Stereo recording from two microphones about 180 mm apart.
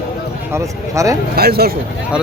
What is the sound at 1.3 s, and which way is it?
Speech, 60° right (ahead or behind).